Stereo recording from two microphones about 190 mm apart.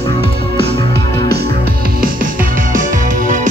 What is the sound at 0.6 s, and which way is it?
Music, 25° left (ahead or behind).